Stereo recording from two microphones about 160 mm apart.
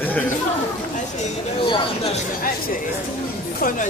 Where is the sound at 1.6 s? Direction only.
35° left (ahead or behind).